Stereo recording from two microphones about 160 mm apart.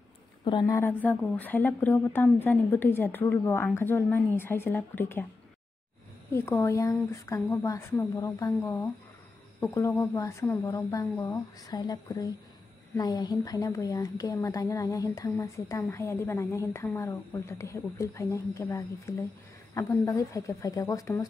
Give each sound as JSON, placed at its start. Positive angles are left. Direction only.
{"t": 0.5, "sound": "a woman's voice", "side_deg": 30}
{"t": 0.7, "sound": "speech", "side_deg": 10}
{"t": 6.3, "sound": "a woman's voice", "side_deg": 15}